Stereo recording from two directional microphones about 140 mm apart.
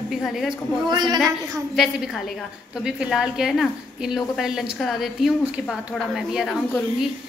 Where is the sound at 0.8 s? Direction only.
30° right (ahead or behind).